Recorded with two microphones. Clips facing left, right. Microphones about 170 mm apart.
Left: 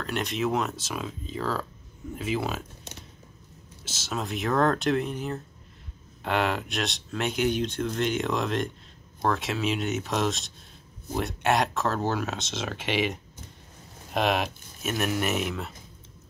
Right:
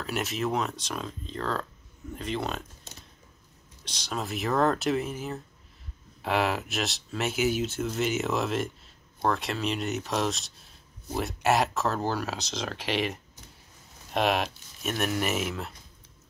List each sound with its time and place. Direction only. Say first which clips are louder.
0.0 s speech: left 2 dB; 5° right (ahead or behind)
3.8 s speech: left 1 dB; 5° left (ahead or behind)